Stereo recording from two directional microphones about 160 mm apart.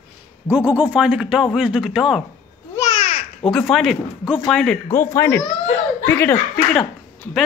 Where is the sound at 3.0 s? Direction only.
35° left (ahead or behind).